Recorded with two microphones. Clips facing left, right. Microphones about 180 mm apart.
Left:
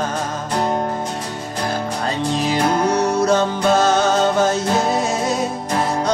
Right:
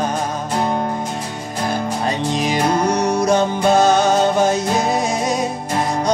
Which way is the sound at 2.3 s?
15° right (ahead or behind).